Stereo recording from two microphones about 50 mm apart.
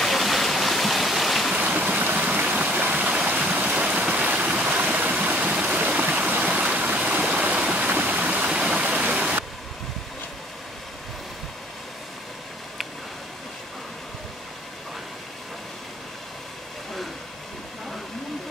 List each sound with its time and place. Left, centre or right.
0.0 s stream: centre
1.5 s boat: centre
1.9 s stream: right